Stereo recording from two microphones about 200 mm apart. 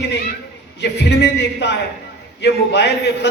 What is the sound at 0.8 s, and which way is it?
Speech, 60° left (ahead or behind).